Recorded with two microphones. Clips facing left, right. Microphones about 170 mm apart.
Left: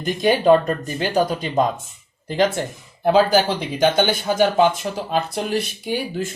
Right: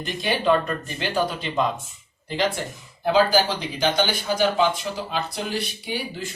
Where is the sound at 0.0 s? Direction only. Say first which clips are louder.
Left 7 dB; 45° left (ahead or behind).